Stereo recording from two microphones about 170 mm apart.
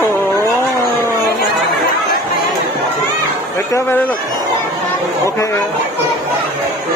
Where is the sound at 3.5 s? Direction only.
15° left (ahead or behind).